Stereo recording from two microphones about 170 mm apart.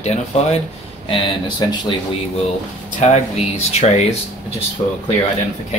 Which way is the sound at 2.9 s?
45° left (ahead or behind).